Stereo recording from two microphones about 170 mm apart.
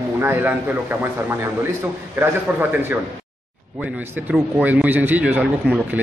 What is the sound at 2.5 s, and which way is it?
Speech, 10° right (ahead or behind).